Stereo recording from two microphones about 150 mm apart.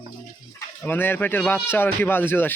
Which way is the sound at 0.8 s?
15° left (ahead or behind).